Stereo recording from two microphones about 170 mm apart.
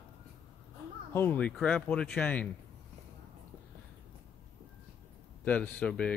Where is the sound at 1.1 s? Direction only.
10° left (ahead or behind).